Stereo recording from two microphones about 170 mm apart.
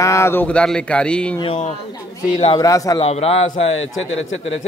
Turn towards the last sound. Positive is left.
turn(degrees=35)  # may be behind; listen again after turning